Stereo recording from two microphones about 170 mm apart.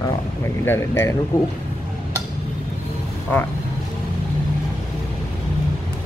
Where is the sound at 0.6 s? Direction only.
15° left (ahead or behind).